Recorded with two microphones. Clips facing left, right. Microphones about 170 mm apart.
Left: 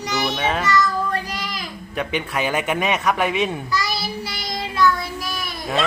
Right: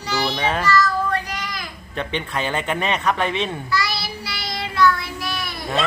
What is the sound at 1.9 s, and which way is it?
A man's voice, 10° left (ahead or behind).